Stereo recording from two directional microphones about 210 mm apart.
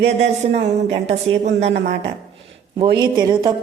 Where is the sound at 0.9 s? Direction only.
30° right (ahead or behind).